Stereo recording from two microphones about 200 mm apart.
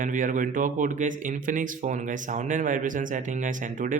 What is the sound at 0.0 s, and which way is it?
Speech, 40° right (ahead or behind).